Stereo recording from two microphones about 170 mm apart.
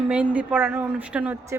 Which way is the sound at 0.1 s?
10° right (ahead or behind).